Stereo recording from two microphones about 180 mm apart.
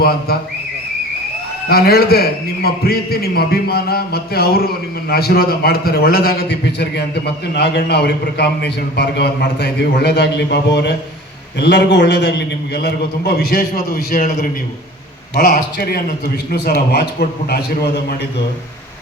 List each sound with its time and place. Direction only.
1.7 s a man's voice: 60° left (ahead or behind); by 12.3 s 75° left (ahead or behind)
12.7 s a man's voice: 60° left (ahead or behind)
15.4 s a man's voice: 55° left (ahead or behind)